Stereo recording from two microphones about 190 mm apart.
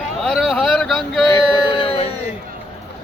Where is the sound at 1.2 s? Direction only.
25° left (ahead or behind).